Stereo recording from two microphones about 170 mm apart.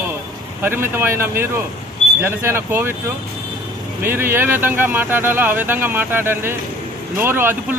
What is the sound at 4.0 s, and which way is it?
Speech, 10° right (ahead or behind).